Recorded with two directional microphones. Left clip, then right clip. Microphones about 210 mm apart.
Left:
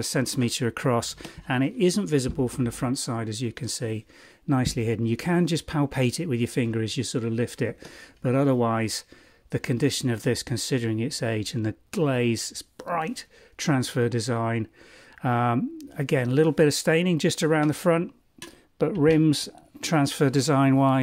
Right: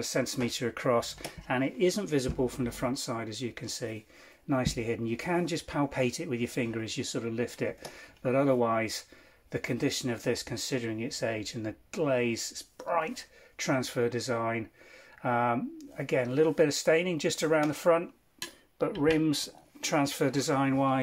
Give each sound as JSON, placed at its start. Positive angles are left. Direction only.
{"t": 0.0, "sound": "speech", "side_deg": 50}